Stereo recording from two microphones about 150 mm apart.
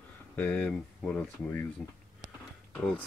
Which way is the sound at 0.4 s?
10° left (ahead or behind).